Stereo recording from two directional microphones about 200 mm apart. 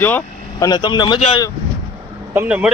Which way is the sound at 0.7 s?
20° left (ahead or behind).